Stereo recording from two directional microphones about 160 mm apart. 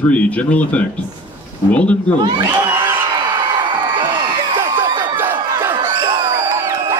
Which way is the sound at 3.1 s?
30° right (ahead or behind).